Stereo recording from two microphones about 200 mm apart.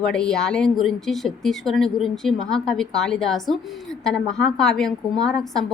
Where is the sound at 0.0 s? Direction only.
5° left (ahead or behind).